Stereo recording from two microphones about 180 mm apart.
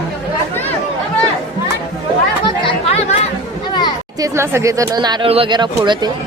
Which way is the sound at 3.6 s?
25° left (ahead or behind).